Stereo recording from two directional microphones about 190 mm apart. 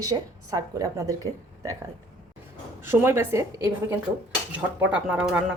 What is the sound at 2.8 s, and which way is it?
Speech, 10° right (ahead or behind).